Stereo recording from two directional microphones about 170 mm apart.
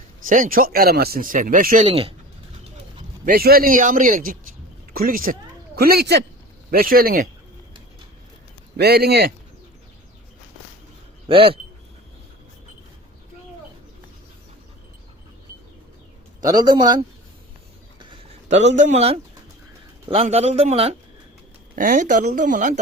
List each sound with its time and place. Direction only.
0.3 s speech: 55° right (ahead or behind)
1.9 s a man's voice: 35° right (ahead or behind)
3.0 s speech: 55° right (ahead or behind)
8.8 s speech: 70° right (ahead or behind)
11.3 s a man's voice: 30° right (ahead or behind)
16.4 s a man's voice: 20° right (ahead or behind)
18.4 s a man's voice: 45° right (ahead or behind)
21.8 s speech: 50° right (ahead or behind)